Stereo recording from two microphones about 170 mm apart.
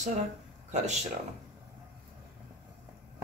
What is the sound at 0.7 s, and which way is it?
Speech, 40° right (ahead or behind).